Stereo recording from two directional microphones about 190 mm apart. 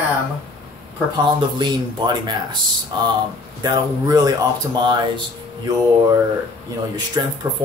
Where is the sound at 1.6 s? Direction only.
25° right (ahead or behind).